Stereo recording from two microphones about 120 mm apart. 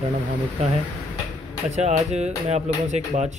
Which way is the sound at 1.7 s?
65° right (ahead or behind).